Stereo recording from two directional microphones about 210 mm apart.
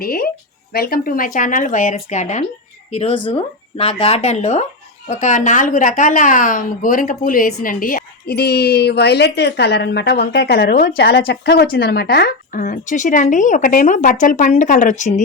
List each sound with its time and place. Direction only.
0.0 s a woman's voice: 45° left (ahead or behind)